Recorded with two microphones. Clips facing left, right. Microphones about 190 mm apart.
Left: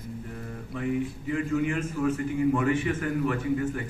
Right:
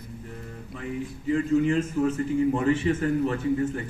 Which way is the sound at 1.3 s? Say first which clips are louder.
Right 5 dB; 30° right (ahead or behind).